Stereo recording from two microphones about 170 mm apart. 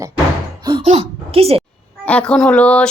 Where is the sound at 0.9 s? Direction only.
35° right (ahead or behind).